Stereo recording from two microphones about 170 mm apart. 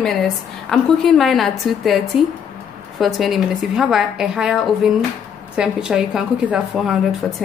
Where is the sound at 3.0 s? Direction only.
Centre (ahead or behind).